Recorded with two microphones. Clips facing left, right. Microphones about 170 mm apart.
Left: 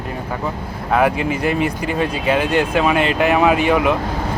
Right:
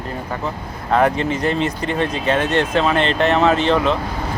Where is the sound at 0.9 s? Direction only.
10° left (ahead or behind).